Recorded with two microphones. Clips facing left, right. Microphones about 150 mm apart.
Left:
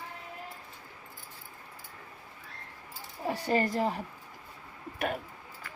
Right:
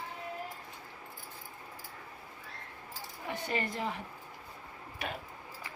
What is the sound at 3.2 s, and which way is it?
Speech, 35° left (ahead or behind).